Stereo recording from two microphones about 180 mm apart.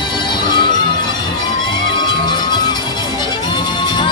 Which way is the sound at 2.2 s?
25° left (ahead or behind).